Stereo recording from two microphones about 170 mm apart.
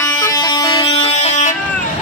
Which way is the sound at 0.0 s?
20° left (ahead or behind).